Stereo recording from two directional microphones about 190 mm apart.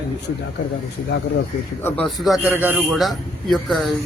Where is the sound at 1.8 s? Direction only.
Centre (ahead or behind).